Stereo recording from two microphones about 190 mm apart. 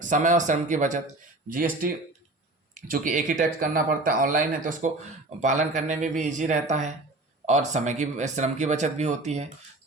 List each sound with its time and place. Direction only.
0.0 s speech: 40° right (ahead or behind)